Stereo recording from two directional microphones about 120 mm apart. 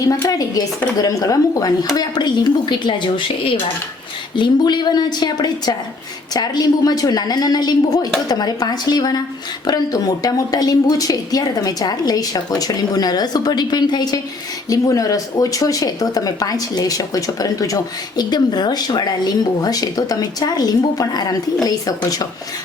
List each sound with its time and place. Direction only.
0.1 s a woman's voice: 30° left (ahead or behind)